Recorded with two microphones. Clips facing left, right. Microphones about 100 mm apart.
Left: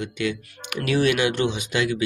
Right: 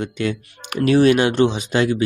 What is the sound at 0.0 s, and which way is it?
Speech, 40° right (ahead or behind).